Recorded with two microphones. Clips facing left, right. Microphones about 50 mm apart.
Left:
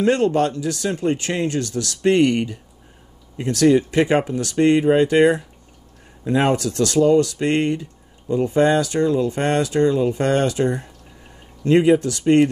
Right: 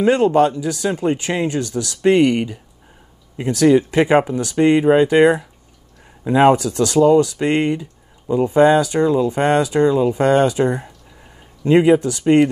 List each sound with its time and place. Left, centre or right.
0.0 s speech: centre